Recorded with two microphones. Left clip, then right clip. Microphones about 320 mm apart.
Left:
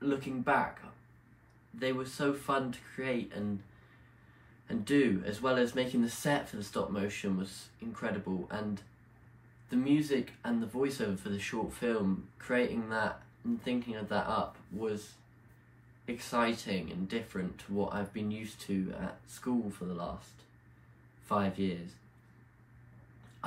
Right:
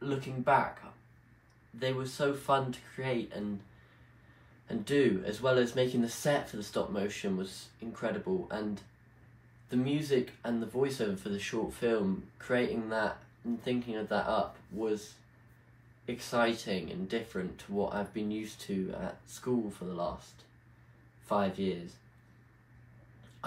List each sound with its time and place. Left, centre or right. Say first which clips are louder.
0.0 s speech: even; centre
1.8 s speech: right 1 dB; centre
4.6 s speech: right 1 dB; centre
16.1 s speech: right 2 dB; centre
21.3 s speech: right 2 dB; centre